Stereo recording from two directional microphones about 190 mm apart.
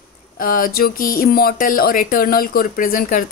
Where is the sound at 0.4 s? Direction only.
50° left (ahead or behind).